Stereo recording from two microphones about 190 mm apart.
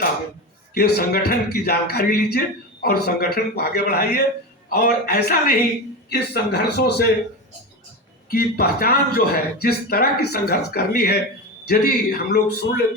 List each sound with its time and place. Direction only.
0.7 s a man's voice: 55° left (ahead or behind)
8.3 s a man's voice: 55° left (ahead or behind)